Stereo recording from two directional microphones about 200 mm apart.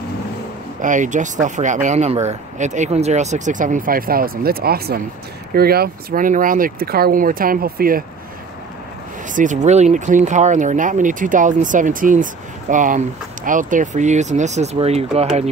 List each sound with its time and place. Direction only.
0.7 s speech: 40° right (ahead or behind)
9.3 s speech: 40° right (ahead or behind)